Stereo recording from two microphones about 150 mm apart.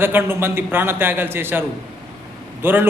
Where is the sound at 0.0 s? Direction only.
15° right (ahead or behind).